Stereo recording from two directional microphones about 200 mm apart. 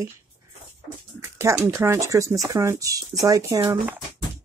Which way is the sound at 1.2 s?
15° right (ahead or behind).